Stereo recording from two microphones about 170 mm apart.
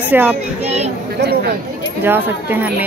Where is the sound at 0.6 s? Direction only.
40° right (ahead or behind).